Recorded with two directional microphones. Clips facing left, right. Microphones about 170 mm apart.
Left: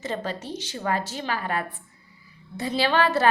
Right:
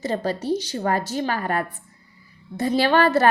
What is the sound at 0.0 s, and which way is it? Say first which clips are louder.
A woman's voice: right 6 dB; 40° right (ahead or behind).